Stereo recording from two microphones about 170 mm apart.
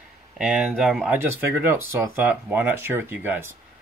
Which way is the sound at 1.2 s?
10° right (ahead or behind).